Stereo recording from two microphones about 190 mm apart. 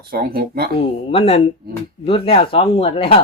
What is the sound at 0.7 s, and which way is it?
Speech, 30° left (ahead or behind).